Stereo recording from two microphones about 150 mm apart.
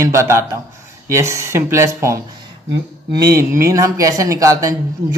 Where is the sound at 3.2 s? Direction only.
20° right (ahead or behind).